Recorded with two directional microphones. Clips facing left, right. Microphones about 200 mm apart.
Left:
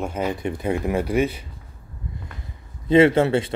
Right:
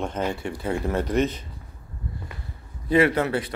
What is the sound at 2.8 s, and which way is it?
Speech, 25° left (ahead or behind).